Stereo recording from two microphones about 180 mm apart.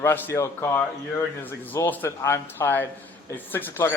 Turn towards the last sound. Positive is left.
turn(degrees=15)  # may be behind; listen again after turning